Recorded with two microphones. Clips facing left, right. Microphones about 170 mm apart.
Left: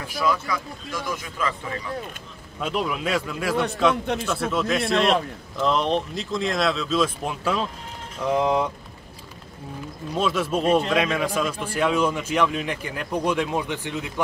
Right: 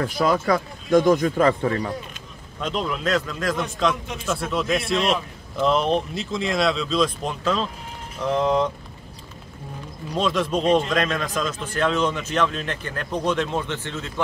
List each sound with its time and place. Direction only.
0.2 s speech: 50° right (ahead or behind)
2.6 s a man's voice: 10° left (ahead or behind)
4.0 s speech: 60° left (ahead or behind)
4.3 s a man's voice: centre (ahead or behind)
10.1 s a man's voice: 5° left (ahead or behind)